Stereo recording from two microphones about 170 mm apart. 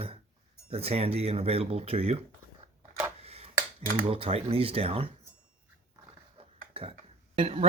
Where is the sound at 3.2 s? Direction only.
35° right (ahead or behind).